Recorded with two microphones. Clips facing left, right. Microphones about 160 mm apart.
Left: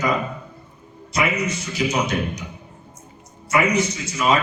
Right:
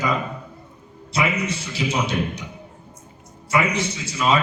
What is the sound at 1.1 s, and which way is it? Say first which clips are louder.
A man's voice: left 1 dB; 30° right (ahead or behind).